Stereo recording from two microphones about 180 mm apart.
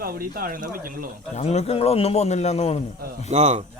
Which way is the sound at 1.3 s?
35° left (ahead or behind).